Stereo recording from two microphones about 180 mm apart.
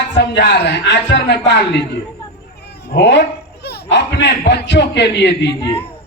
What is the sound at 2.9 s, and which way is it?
Speech, 75° left (ahead or behind).